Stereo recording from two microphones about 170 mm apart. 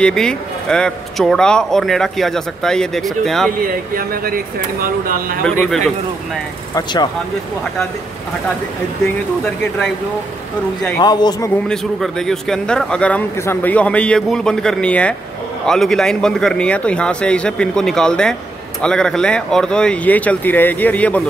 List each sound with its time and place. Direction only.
0.0 s a man's voice: 5° left (ahead or behind)
3.6 s speech: 55° right (ahead or behind)
5.4 s a man's voice: 5° left (ahead or behind)
6.7 s speech: 25° left (ahead or behind)
11.0 s speech: 25° left (ahead or behind)
11.6 s a man's voice: 5° left (ahead or behind)